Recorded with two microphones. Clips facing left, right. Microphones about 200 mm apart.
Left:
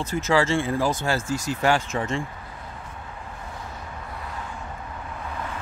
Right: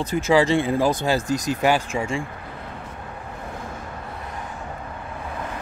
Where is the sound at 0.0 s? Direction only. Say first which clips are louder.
Right 4 dB; 15° right (ahead or behind).